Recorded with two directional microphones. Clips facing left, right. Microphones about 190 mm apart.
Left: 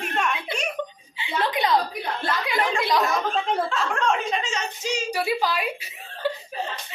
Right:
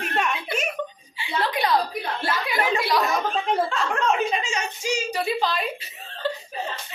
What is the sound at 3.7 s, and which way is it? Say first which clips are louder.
Speech: right 1 dB; centre (ahead or behind).